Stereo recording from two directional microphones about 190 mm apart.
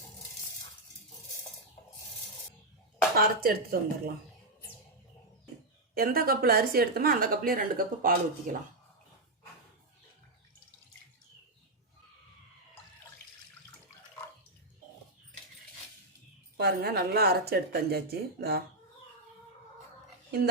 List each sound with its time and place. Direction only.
3.2 s a woman's voice: 55° right (ahead or behind)
5.9 s a woman's voice: 50° right (ahead or behind)
16.6 s speech: 55° right (ahead or behind)